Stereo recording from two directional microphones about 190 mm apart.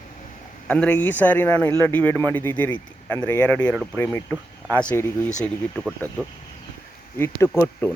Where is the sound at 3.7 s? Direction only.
5° right (ahead or behind).